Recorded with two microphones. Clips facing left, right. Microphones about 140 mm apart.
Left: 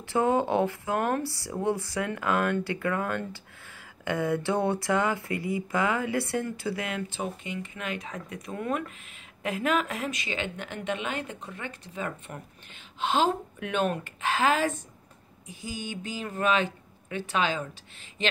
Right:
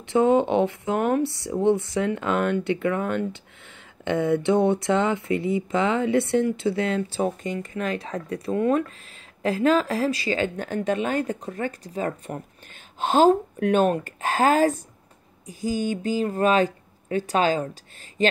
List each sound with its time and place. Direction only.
0.0 s a woman's voice: 20° right (ahead or behind); by 17.6 s 40° right (ahead or behind)